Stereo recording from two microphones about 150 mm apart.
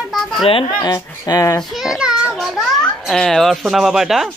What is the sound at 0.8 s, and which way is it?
Speech, 25° left (ahead or behind).